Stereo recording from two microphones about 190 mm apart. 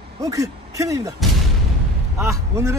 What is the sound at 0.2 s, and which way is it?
Speech, 20° right (ahead or behind).